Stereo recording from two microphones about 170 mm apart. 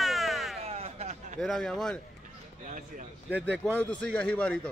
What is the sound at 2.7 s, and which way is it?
Speech, 50° right (ahead or behind).